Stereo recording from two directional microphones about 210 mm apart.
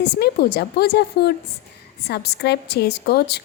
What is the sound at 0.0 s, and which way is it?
A woman's voice, 50° left (ahead or behind).